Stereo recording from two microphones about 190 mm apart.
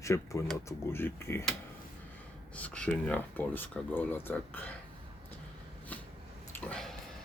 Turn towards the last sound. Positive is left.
turn(degrees=5)  # may be behind; listen again after turning